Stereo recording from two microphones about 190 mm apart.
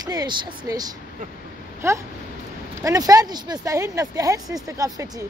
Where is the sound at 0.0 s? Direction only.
20° right (ahead or behind).